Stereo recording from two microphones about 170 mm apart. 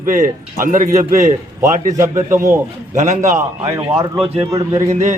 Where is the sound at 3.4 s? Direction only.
15° right (ahead or behind).